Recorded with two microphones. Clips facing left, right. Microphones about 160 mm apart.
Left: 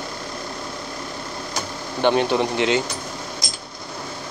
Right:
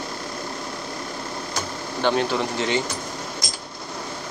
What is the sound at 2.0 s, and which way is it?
Speech, 20° left (ahead or behind).